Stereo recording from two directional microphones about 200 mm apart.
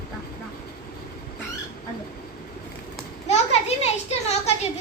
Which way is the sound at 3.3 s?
30° left (ahead or behind).